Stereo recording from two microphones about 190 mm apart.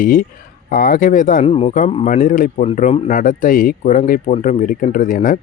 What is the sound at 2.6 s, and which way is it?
Speech, 35° left (ahead or behind).